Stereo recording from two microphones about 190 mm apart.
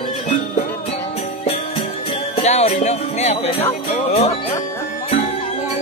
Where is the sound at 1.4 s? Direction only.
30° left (ahead or behind).